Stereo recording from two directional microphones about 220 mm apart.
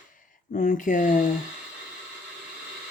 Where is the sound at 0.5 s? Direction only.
35° left (ahead or behind).